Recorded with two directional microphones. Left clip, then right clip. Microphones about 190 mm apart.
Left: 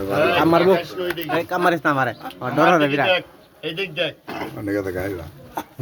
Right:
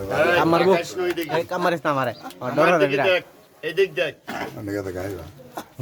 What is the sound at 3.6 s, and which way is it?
Speech, 15° right (ahead or behind).